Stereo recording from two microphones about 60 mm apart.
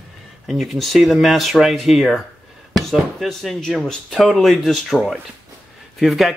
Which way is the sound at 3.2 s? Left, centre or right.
Centre.